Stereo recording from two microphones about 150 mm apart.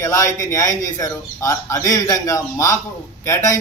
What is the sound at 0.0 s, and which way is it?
A man's voice, 20° left (ahead or behind).